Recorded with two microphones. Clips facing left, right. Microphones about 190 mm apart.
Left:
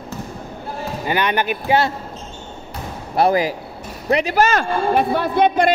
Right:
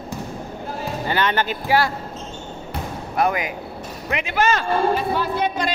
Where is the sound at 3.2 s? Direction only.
35° left (ahead or behind).